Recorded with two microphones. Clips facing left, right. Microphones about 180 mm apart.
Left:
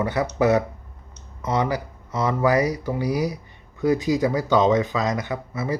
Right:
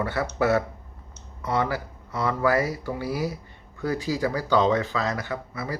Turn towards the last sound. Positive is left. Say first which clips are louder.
# left 5 dB
turn(degrees=20)  # may be behind; listen again after turning